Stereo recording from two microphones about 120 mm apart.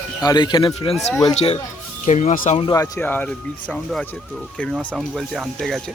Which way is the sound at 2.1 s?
85° left.